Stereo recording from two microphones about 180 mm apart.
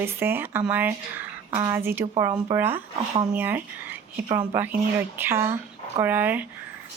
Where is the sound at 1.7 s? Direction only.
15° right (ahead or behind).